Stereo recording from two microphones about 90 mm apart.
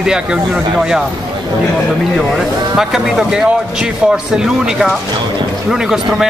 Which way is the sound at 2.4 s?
5° right (ahead or behind).